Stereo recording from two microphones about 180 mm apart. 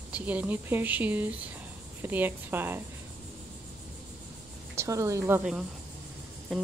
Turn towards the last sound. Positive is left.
turn(degrees=0)  # may be behind; listen again after turning